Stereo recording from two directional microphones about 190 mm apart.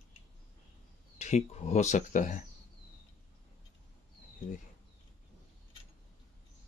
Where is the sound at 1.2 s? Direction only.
35° left (ahead or behind).